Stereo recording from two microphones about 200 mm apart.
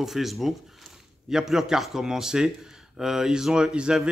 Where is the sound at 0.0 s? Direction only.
Centre (ahead or behind).